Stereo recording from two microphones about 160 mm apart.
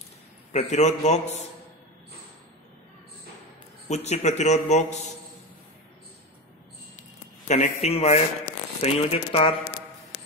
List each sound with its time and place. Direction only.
0.5 s a man's voice: 45° left (ahead or behind)
3.9 s a man's voice: 45° left (ahead or behind)
7.0 s a sound: 50° left (ahead or behind)
8.8 s speech: 40° left (ahead or behind)